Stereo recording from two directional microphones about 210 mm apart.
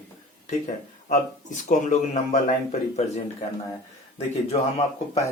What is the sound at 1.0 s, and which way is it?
Speech, 35° left (ahead or behind).